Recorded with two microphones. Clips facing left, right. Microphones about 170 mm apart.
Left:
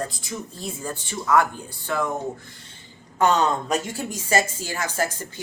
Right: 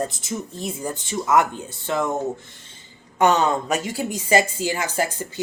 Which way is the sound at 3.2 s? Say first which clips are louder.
Right 2 dB; 10° right (ahead or behind).